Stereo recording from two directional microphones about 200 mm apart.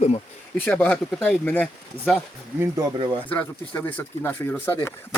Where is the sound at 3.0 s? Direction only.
25° right (ahead or behind).